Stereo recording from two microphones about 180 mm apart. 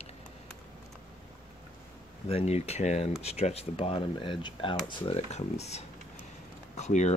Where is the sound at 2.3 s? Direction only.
35° left (ahead or behind).